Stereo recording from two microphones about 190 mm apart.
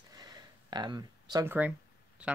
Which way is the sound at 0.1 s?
20° right (ahead or behind).